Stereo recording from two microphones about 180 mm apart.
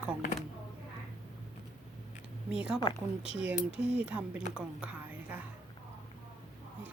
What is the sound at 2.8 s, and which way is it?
Speech, 25° left (ahead or behind).